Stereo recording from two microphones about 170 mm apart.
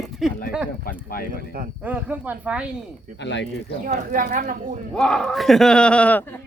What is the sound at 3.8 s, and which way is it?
Speech, 55° right (ahead or behind).